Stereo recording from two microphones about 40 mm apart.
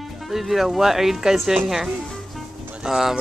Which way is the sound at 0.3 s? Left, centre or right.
Centre.